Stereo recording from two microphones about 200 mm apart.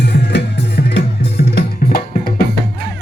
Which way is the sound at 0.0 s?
55° left (ahead or behind).